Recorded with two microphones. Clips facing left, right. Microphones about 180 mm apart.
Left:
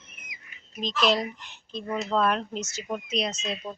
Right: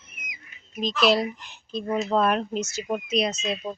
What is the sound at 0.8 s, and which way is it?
Speech, 5° right (ahead or behind).